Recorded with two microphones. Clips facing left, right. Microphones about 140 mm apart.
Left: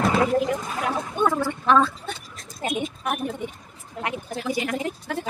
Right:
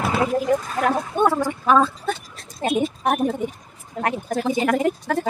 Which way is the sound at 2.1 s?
45° right (ahead or behind).